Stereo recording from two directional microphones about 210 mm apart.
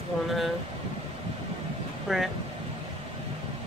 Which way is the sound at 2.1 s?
Centre (ahead or behind).